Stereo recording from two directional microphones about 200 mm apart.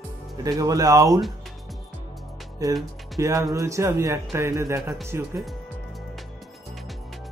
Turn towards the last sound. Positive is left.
turn(degrees=-15)  # may be behind; listen again after turning